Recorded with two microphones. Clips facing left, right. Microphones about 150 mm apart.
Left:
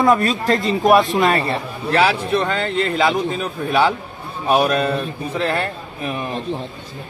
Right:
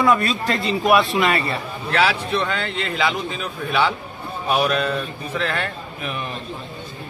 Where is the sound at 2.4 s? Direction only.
40° left (ahead or behind).